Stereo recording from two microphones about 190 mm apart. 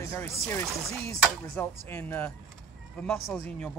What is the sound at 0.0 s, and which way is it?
Speech, 15° left (ahead or behind).